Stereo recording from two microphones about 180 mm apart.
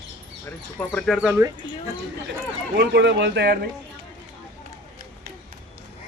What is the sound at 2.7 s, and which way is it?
Speech, 70° right (ahead or behind).